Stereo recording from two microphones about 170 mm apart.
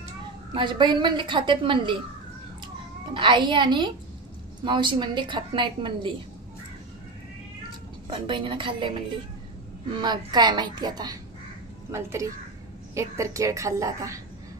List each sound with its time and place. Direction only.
0.6 s a woman's voice: 25° right (ahead or behind)
3.1 s a woman's voice: 30° right (ahead or behind)
8.3 s a woman's voice: 30° right (ahead or behind)